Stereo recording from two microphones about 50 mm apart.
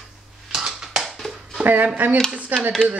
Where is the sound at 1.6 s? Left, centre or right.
Right.